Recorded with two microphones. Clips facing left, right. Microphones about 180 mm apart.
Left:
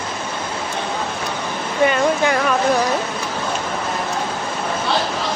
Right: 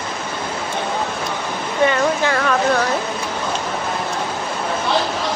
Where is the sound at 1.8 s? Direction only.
20° left (ahead or behind).